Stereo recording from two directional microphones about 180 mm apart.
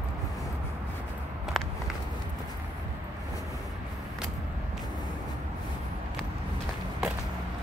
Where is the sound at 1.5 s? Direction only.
Centre (ahead or behind).